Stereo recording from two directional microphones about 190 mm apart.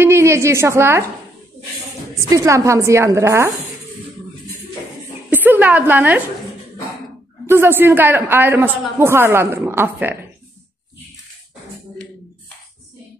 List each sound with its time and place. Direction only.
0.0 s a sound: 15° right (ahead or behind)
2.2 s a woman's voice: 15° right (ahead or behind)
5.3 s a woman's voice: 10° right (ahead or behind)
7.4 s a woman's voice: 10° right (ahead or behind)